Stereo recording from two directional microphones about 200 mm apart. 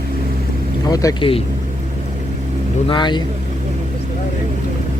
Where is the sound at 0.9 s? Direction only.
20° left (ahead or behind).